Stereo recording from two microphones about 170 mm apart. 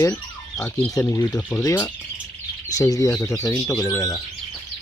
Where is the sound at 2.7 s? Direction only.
20° left (ahead or behind).